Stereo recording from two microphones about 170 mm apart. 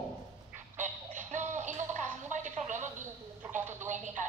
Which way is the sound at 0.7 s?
45° right (ahead or behind).